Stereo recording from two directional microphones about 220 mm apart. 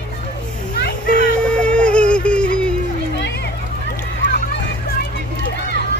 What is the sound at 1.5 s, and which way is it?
Music, 5° left (ahead or behind).